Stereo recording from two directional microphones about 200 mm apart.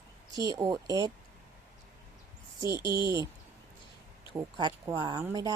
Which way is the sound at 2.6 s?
15° right (ahead or behind).